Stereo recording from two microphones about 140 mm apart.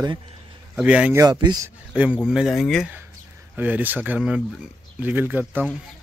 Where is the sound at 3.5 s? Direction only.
10° right (ahead or behind).